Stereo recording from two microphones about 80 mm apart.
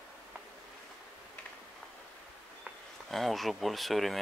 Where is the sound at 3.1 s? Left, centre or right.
Centre.